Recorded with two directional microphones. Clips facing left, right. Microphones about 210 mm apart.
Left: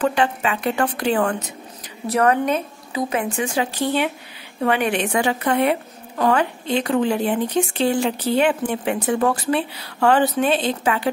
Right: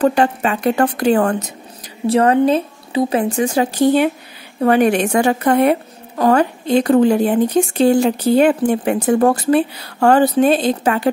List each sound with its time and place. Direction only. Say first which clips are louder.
0.0 s a woman's voice: right 5 dB; 40° right (ahead or behind)
2.0 s a woman's voice: right 6 dB; 30° right (ahead or behind)